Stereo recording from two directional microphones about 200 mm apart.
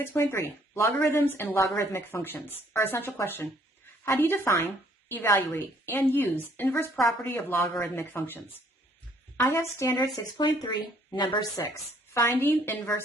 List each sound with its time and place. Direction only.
0.0 s a woman's voice: 10° left (ahead or behind)
9.5 s a woman's voice: 15° left (ahead or behind)